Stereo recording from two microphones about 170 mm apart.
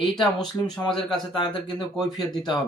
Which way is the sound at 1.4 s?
25° left (ahead or behind).